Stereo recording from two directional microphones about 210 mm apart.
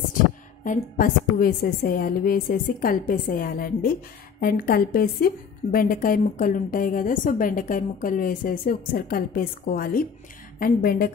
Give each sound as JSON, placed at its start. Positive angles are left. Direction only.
{"t": 0.7, "sound": "a woman's voice", "side_deg": 40}